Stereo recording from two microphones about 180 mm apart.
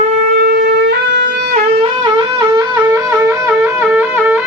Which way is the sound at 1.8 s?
25° right (ahead or behind).